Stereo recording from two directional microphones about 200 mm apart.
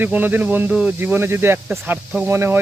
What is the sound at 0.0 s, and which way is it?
Speech, 10° right (ahead or behind).